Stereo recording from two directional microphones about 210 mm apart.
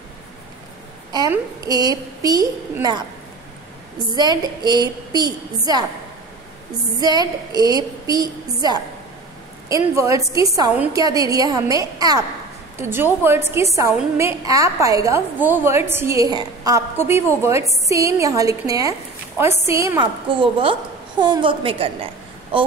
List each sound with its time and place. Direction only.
1.3 s a woman's voice: 15° right (ahead or behind)
4.0 s a woman's voice: 20° right (ahead or behind)
7.0 s a woman's voice: 20° right (ahead or behind)